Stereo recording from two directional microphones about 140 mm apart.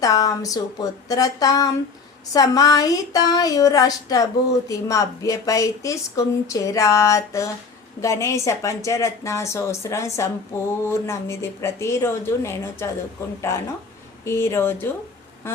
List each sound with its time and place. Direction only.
0.0 s a woman's voice: 25° left (ahead or behind)
14.3 s speech: 20° left (ahead or behind)
15.4 s duck: 20° left (ahead or behind)